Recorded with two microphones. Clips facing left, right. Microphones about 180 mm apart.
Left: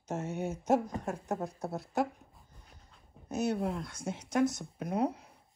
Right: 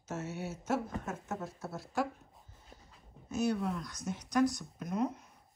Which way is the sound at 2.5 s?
Centre (ahead or behind).